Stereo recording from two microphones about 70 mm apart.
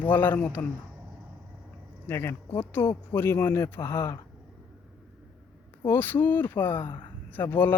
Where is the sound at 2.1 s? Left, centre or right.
Left.